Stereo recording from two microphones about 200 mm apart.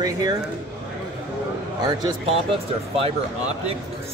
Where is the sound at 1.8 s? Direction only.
25° right (ahead or behind).